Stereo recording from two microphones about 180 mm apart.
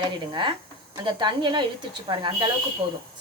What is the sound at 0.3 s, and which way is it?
Speech, 25° right (ahead or behind).